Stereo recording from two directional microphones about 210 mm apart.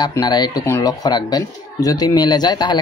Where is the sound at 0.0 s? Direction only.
20° left (ahead or behind).